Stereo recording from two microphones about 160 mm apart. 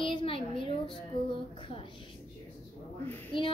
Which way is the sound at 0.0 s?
35° left (ahead or behind).